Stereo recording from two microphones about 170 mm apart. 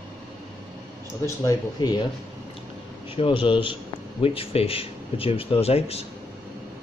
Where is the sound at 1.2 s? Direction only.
20° left (ahead or behind).